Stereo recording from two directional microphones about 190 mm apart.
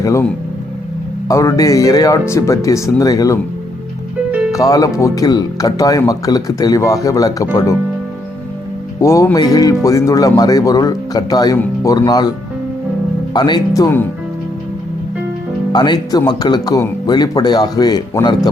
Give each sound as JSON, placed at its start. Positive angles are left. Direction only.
{"t": 0.0, "sound": "speech", "side_deg": 15}
{"t": 1.3, "sound": "speech", "side_deg": 15}
{"t": 4.5, "sound": "speech", "side_deg": 20}
{"t": 9.0, "sound": "speech", "side_deg": 15}
{"t": 13.3, "sound": "speech", "side_deg": 20}
{"t": 15.7, "sound": "speech", "side_deg": 20}